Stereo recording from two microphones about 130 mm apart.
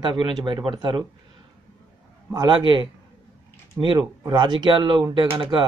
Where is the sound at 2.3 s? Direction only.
35° right (ahead or behind).